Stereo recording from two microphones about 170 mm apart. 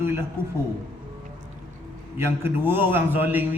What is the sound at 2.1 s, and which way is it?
A man's voice, 15° right (ahead or behind).